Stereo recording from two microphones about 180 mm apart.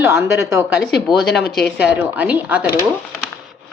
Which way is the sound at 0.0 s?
15° right (ahead or behind).